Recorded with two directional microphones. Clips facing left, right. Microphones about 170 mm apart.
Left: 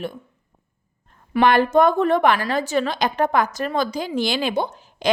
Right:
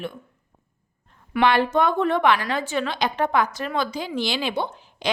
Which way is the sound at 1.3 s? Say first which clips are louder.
Left 4 dB; 45° left (ahead or behind).